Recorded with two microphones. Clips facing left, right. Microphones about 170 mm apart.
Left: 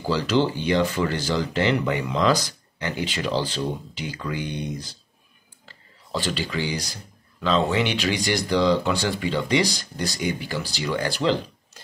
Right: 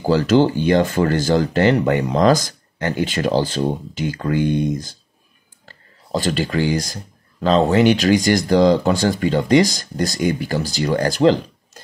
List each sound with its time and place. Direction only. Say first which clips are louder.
0.0 s speech: right 7 dB; 45° right (ahead or behind)